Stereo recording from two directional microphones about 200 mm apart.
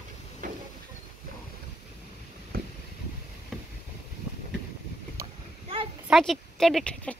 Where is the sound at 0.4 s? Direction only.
40° right (ahead or behind).